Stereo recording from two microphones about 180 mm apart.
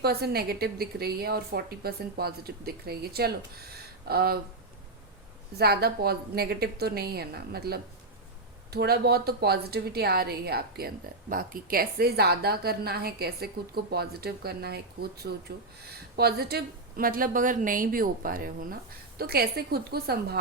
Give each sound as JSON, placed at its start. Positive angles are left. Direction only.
{"t": 0.0, "sound": "a woman's voice", "side_deg": -60}
{"t": 5.5, "sound": "a woman's voice", "side_deg": -60}